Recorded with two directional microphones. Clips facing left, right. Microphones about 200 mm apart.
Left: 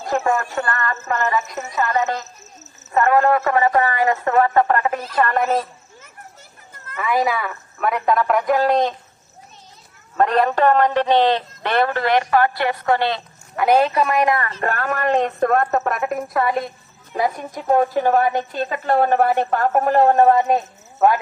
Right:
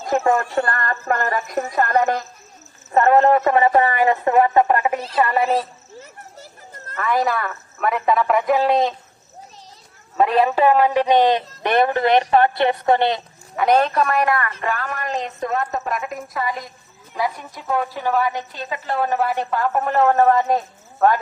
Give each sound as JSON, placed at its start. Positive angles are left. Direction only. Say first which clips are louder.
{"t": 0.5, "sound": "speech", "louder": "right 2 dB", "side_deg": -35}
{"t": 1.0, "sound": "speech", "louder": "even", "side_deg": -50}
{"t": 2.9, "sound": "a man's voice", "louder": "right 2 dB", "side_deg": -30}
{"t": 5.5, "sound": "a sound", "louder": "even", "side_deg": -30}
{"t": 6.9, "sound": "speech", "louder": "even", "side_deg": 5}
{"t": 10.2, "sound": "speech", "louder": "even", "side_deg": -5}
{"t": 13.6, "sound": "speech", "louder": "left 1 dB", "side_deg": 5}
{"t": 14.6, "sound": "speech", "louder": "left 4 dB", "side_deg": 55}
{"t": 17.2, "sound": "a woman's voice", "louder": "left 3 dB", "side_deg": 45}
{"t": 20.3, "sound": "speech", "louder": "left 1 dB", "side_deg": 15}